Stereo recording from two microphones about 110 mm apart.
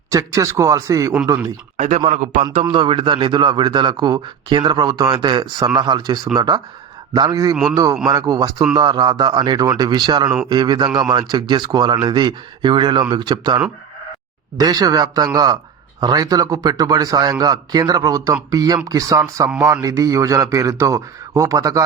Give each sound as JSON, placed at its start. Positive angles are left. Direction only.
{"t": 0.1, "sound": "a man's voice", "side_deg": -30}
{"t": 1.7, "sound": "a man's voice", "side_deg": -90}
{"t": 2.6, "sound": "a man's voice", "side_deg": -45}
{"t": 14.6, "sound": "a man's voice", "side_deg": -35}